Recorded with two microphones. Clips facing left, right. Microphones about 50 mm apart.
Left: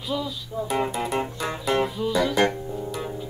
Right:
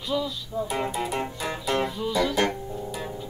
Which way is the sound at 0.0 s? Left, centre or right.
Centre.